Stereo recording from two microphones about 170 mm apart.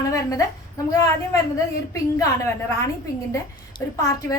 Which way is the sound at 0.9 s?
20° left (ahead or behind).